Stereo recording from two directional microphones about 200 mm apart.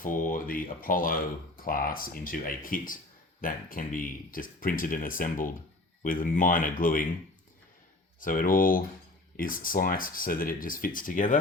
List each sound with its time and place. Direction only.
0.0 s speech: 45° left (ahead or behind)
8.2 s speech: 45° left (ahead or behind)